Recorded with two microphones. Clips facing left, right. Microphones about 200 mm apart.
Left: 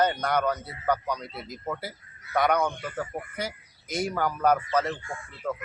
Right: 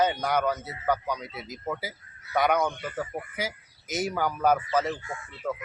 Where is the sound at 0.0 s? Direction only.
5° right (ahead or behind).